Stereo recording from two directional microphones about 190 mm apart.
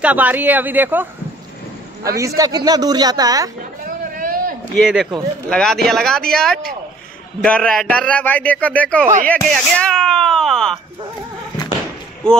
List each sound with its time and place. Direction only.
0.0 s speech: 10° right (ahead or behind)
2.0 s a man's voice: 15° right (ahead or behind)
3.8 s a sound: 50° right (ahead or behind)
4.7 s a man's voice: centre (ahead or behind)